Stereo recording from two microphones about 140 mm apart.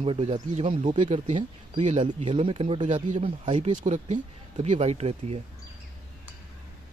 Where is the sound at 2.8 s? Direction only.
60° right (ahead or behind).